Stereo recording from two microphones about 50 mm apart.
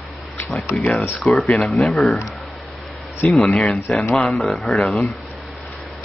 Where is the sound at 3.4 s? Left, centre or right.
Left.